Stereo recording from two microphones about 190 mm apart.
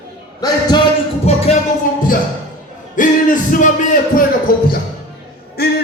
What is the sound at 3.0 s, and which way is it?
Music, 45° left (ahead or behind).